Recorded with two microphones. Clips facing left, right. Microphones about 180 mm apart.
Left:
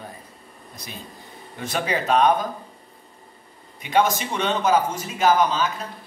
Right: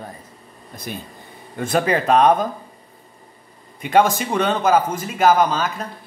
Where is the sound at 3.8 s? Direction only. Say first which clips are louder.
Right 4 dB; 50° right (ahead or behind).